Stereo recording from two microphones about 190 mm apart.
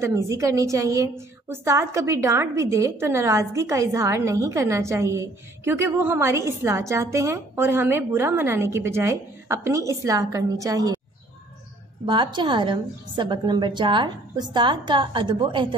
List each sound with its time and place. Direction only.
0.0 s a woman's voice: 15° right (ahead or behind)
12.1 s a woman's voice: 25° right (ahead or behind)